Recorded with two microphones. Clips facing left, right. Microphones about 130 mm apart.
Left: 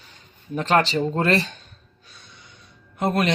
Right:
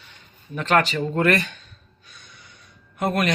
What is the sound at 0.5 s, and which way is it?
Speech, 30° left (ahead or behind).